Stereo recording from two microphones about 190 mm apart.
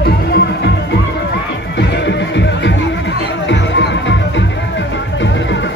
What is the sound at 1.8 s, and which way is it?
Music, 65° left (ahead or behind).